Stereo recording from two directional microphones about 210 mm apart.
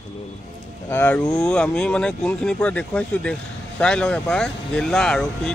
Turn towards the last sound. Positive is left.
turn(degrees=5)  # may be behind; listen again after turning